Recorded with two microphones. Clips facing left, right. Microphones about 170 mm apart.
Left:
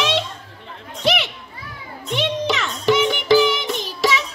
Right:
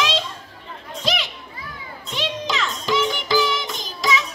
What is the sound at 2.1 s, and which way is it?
Music, 65° left (ahead or behind).